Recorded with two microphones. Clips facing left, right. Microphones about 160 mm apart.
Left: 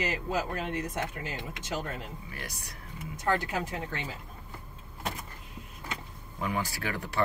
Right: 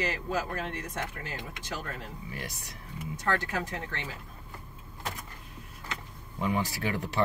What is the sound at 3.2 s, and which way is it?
Speech, 15° left (ahead or behind).